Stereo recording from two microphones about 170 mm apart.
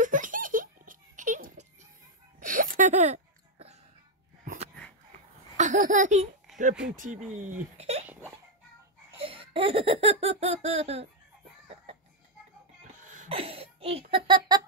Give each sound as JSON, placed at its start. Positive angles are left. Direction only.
{"t": 0.0, "sound": "giggle", "side_deg": -50}
{"t": 2.4, "sound": "a sound", "side_deg": -55}
{"t": 5.6, "sound": "a child's voice", "side_deg": -45}
{"t": 9.2, "sound": "laughter", "side_deg": -30}
{"t": 13.0, "sound": "a sound", "side_deg": -50}
{"t": 13.3, "sound": "laughter", "side_deg": -35}